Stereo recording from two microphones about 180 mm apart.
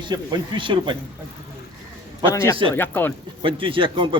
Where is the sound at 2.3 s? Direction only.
15° left (ahead or behind).